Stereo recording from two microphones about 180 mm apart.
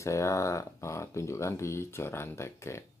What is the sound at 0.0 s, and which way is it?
Speech, 15° left (ahead or behind).